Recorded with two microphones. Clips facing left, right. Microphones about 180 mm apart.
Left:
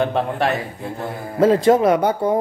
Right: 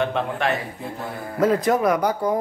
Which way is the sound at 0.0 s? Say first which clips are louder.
Left 3 dB; 35° left (ahead or behind).